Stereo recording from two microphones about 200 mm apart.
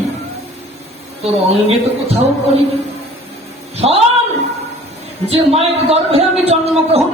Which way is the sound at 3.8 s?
30° right (ahead or behind).